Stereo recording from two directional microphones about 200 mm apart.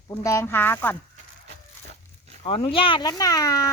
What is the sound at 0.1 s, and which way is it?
Speech, 15° left (ahead or behind).